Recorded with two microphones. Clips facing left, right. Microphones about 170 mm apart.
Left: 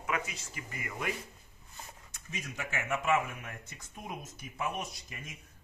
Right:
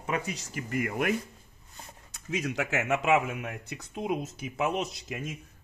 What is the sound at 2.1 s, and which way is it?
Speech, 75° right (ahead or behind).